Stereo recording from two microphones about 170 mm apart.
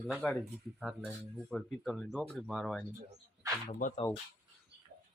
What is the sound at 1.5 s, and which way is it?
Speech, centre (ahead or behind).